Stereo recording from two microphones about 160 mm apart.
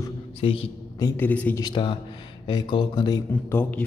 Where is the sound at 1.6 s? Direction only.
30° left (ahead or behind).